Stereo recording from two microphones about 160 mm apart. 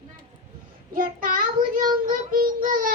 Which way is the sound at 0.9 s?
60° right (ahead or behind).